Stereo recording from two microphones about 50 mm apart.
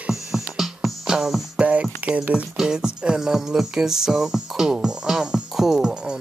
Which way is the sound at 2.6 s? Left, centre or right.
Centre.